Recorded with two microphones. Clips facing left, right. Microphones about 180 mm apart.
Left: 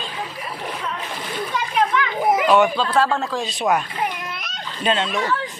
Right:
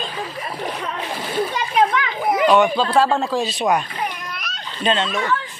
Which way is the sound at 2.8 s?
30° right (ahead or behind).